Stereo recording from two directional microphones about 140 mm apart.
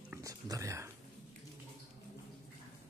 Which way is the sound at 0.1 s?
25° right (ahead or behind).